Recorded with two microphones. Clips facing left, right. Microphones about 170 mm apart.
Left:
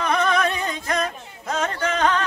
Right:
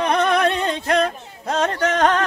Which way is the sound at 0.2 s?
65° right (ahead or behind).